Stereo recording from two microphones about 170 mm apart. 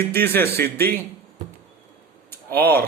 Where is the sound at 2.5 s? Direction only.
10° left (ahead or behind).